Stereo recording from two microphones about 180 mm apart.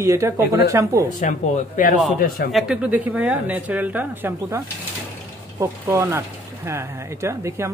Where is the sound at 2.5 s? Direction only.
5° right (ahead or behind).